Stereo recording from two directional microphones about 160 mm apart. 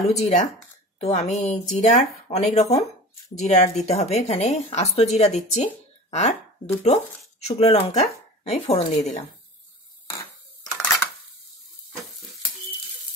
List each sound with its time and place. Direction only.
0.1 s a woman's voice: 45° left (ahead or behind)